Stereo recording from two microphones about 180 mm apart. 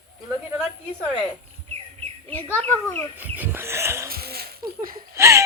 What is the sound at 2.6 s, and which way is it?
Speech, 15° left (ahead or behind).